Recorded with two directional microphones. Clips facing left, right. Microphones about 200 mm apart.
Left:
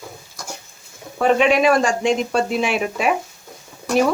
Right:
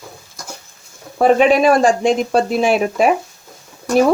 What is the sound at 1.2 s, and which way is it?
Speech, 40° right (ahead or behind).